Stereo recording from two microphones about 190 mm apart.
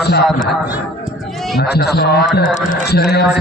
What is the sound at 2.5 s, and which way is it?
Speech, 40° left (ahead or behind).